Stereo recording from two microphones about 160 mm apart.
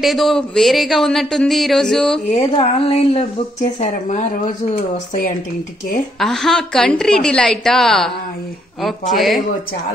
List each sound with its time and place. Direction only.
0.0 s speech: centre (ahead or behind)
2.2 s speech: 40° left (ahead or behind)
6.1 s speech: centre (ahead or behind)